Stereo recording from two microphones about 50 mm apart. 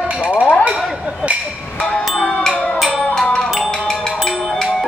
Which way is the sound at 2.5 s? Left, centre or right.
Left.